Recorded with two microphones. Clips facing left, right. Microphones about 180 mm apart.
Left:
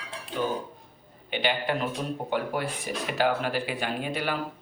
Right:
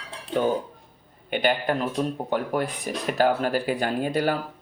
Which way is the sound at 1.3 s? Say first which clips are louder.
Right 4 dB; 45° right (ahead or behind).